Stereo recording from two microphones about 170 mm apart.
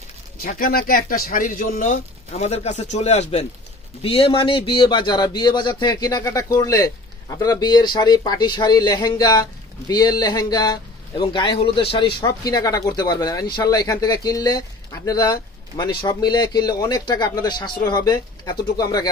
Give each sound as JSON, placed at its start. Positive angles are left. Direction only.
{"t": 0.4, "sound": "speech", "side_deg": 60}